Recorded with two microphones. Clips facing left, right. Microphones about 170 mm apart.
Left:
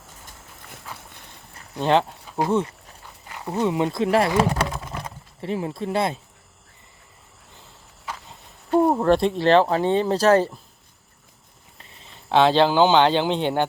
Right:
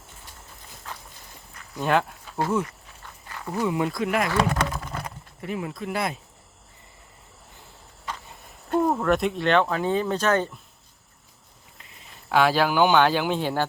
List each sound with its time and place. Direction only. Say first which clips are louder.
1.5 s a sound: left 3 dB; 25° left (ahead or behind)
2.5 s speech: left 4 dB; 30° left (ahead or behind)
3.2 s speech: left 3 dB; 15° left (ahead or behind)
8.1 s a sound: even; 10° left (ahead or behind)
8.8 s speech: left 4 dB; 30° left (ahead or behind)
12.3 s speech: left 4 dB; 25° left (ahead or behind)